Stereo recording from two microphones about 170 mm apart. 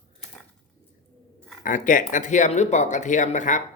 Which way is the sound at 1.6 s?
50° left (ahead or behind).